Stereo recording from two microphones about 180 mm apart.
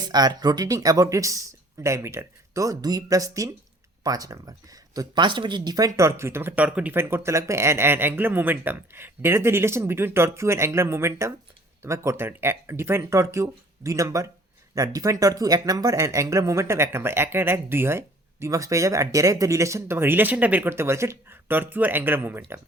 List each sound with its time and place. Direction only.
0.1 s speech: 20° right (ahead or behind)